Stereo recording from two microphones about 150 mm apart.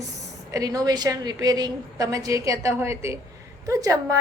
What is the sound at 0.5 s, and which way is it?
A woman's voice, 25° right (ahead or behind).